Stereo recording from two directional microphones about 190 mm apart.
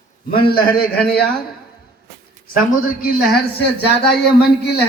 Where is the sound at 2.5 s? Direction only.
50° left (ahead or behind).